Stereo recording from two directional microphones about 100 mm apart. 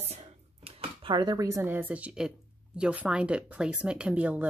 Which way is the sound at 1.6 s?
15° right (ahead or behind).